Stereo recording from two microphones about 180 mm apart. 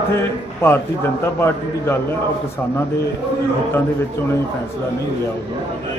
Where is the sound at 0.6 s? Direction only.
10° left (ahead or behind).